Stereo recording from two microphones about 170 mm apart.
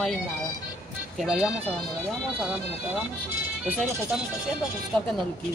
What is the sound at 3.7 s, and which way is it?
Speech, 5° right (ahead or behind).